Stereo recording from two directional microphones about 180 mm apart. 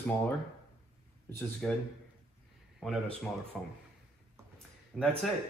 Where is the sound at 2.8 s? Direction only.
5° left (ahead or behind).